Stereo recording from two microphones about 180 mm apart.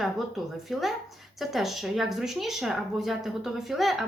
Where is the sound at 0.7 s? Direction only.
Centre (ahead or behind).